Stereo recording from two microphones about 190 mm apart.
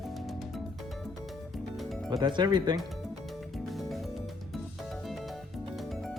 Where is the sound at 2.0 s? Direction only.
25° right (ahead or behind).